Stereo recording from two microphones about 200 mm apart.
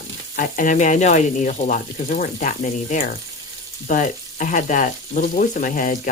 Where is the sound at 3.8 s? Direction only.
40° left (ahead or behind).